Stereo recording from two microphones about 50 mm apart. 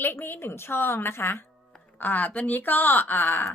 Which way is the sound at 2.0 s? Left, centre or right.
Left.